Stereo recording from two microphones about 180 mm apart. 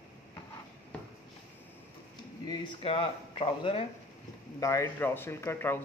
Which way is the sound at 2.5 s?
25° left (ahead or behind).